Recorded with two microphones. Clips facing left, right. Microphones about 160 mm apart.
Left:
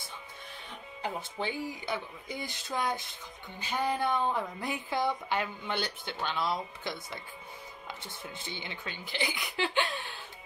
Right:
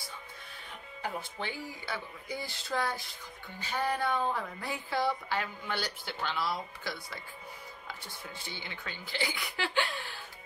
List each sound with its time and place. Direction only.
1.0 s a woman's voice: 20° left (ahead or behind)
8.4 s a woman's voice: 20° left (ahead or behind)